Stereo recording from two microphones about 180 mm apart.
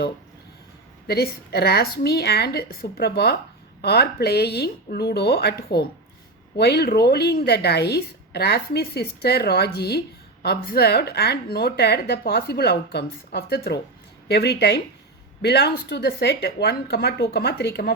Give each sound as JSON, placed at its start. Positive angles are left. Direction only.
{"t": 1.0, "sound": "a woman's voice", "side_deg": 60}